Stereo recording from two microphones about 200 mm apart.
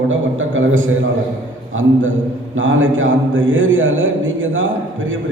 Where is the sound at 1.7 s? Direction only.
80° right.